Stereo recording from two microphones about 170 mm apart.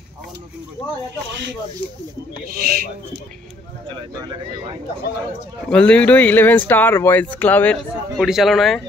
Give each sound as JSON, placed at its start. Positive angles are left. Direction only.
{"t": 2.5, "sound": "speech", "side_deg": -65}
{"t": 5.7, "sound": "speech", "side_deg": 5}